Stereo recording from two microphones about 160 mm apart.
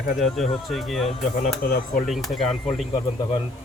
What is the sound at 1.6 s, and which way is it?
Speech, 65° left (ahead or behind).